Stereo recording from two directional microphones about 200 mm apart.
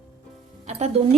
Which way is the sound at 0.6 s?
30° right (ahead or behind).